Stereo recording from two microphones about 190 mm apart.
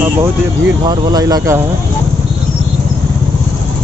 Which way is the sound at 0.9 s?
20° right (ahead or behind).